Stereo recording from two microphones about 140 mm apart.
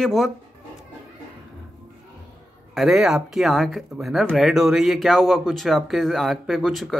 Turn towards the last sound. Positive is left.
turn(degrees=0)  # may be behind; listen again after turning